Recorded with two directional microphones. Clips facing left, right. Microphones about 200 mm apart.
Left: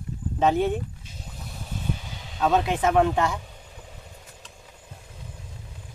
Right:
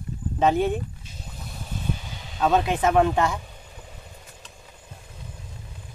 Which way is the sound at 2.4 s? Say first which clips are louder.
Right 1 dB; 45° right (ahead or behind).